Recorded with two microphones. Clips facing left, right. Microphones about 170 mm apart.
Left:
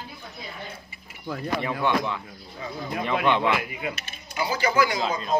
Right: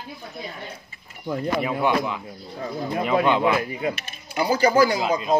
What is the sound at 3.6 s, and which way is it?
Speech, 35° right (ahead or behind).